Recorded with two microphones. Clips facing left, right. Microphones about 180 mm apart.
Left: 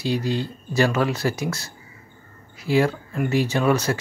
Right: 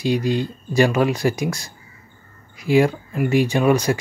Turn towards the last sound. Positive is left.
turn(degrees=-15)  # may be behind; listen again after turning